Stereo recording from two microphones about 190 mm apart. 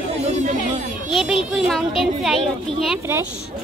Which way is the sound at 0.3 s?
40° right (ahead or behind).